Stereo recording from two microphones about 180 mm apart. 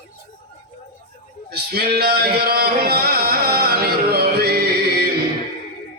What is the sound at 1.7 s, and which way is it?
Singing, 60° right (ahead or behind).